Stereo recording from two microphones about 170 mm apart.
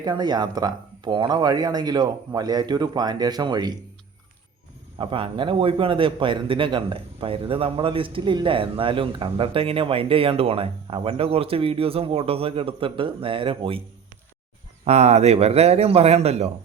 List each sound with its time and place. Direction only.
0.0 s speech: 25° right (ahead or behind)
4.9 s a man's voice: 30° right (ahead or behind)
14.8 s a man's voice: 40° right (ahead or behind)